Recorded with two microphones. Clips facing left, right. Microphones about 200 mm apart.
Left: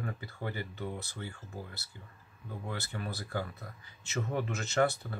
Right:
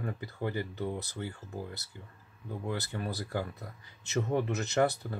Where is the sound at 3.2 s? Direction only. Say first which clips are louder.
Right 2 dB; 20° right (ahead or behind).